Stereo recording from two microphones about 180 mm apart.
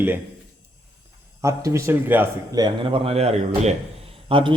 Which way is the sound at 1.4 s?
15° right (ahead or behind).